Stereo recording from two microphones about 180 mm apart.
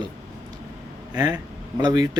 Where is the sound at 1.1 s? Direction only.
15° right (ahead or behind).